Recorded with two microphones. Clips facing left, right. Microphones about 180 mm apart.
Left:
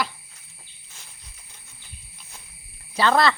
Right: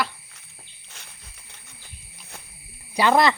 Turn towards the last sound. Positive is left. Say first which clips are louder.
# right 1 dB
turn(degrees=-15)  # may be behind; listen again after turning